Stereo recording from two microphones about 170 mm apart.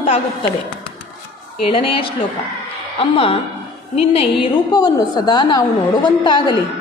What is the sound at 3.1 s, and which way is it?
A woman's voice, 30° left (ahead or behind).